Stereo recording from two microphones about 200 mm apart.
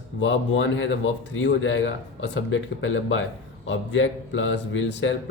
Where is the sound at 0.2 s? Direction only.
65° left (ahead or behind).